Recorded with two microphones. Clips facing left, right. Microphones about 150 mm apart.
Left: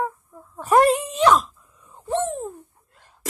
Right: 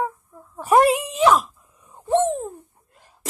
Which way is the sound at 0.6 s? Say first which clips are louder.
Even; 10° right (ahead or behind).